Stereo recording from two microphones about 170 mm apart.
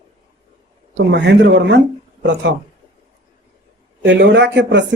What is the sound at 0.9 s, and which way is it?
Speech, 90° right.